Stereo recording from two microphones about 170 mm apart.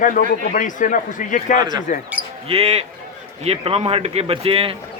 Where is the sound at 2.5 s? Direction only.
35° right (ahead or behind).